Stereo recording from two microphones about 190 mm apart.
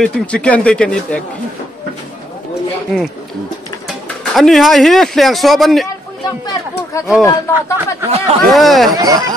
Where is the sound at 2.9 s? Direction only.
Centre (ahead or behind).